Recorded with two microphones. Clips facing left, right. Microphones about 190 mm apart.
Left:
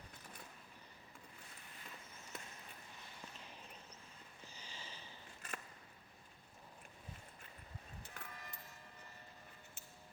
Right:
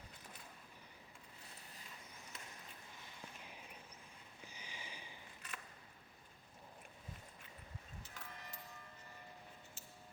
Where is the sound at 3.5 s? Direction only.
10° right (ahead or behind).